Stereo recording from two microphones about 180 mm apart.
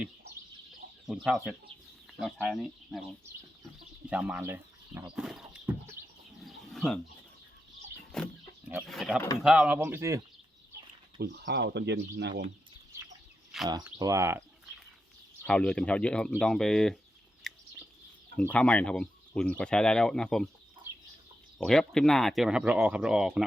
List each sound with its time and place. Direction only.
1.0 s speech: 5° right (ahead or behind)
4.1 s speech: 5° right (ahead or behind)
6.4 s a sound: centre (ahead or behind)
8.1 s speech: 5° left (ahead or behind); by 10.2 s 15° right (ahead or behind)
11.2 s speech: 65° right (ahead or behind)
13.8 s speech: 15° right (ahead or behind)
15.4 s speech: 5° left (ahead or behind)
17.5 s bird: centre (ahead or behind)
18.3 s speech: 5° left (ahead or behind)
21.6 s speech: 5° left (ahead or behind)